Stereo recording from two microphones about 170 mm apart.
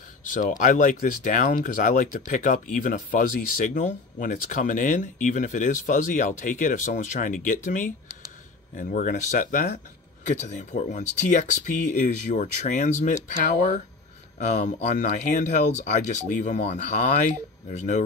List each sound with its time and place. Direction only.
0.3 s speech: 50° left (ahead or behind)
14.4 s speech: 40° left (ahead or behind)